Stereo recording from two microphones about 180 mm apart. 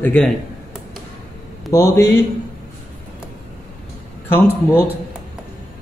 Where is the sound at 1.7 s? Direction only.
15° left (ahead or behind).